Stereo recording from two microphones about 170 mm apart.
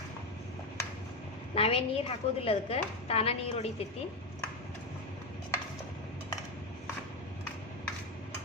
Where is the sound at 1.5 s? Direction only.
35° left (ahead or behind).